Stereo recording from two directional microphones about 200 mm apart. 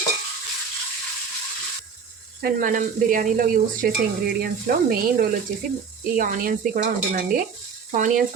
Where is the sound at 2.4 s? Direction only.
45° right (ahead or behind).